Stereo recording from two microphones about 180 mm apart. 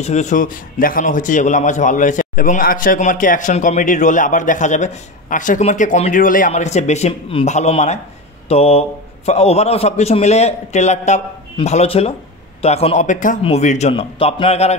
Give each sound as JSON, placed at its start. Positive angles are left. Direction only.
{"t": 0.0, "sound": "a man's voice", "side_deg": 40}